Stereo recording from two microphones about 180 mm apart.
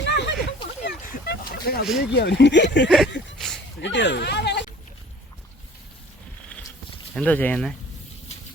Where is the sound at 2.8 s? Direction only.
Centre (ahead or behind).